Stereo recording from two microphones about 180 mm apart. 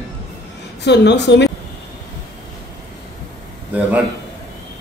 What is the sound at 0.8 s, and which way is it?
Speech, 70° left (ahead or behind).